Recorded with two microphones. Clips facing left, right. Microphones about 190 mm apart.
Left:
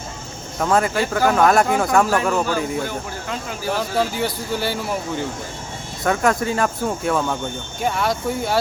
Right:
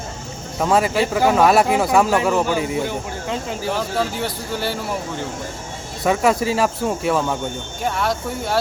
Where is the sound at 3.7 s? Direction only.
Centre (ahead or behind).